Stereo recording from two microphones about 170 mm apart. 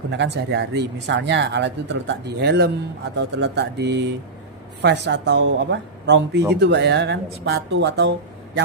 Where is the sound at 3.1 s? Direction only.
85° right.